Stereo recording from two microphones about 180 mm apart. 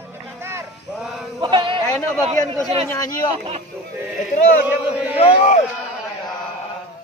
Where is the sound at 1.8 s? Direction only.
15° left (ahead or behind).